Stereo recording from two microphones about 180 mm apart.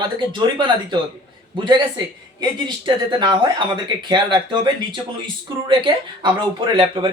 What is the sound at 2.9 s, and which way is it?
Speech, 25° right (ahead or behind).